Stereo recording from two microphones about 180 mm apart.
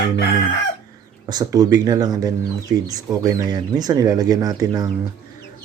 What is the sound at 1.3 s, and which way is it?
Speech, 20° right (ahead or behind).